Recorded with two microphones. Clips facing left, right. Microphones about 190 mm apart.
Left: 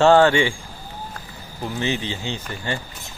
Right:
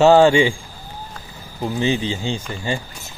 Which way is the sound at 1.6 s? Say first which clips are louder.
Right 5 dB; 25° right (ahead or behind).